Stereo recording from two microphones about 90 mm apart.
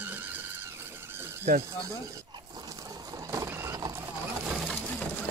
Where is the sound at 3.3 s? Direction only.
35° right (ahead or behind).